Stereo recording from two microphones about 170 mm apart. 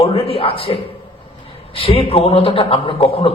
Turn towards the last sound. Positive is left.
turn(degrees=35)  # may be behind; listen again after turning